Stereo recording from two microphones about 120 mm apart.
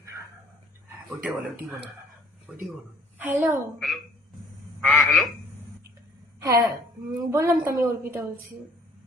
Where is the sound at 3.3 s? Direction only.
20° right (ahead or behind).